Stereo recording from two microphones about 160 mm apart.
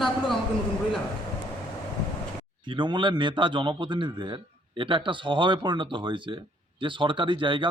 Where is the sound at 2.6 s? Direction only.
30° right (ahead or behind).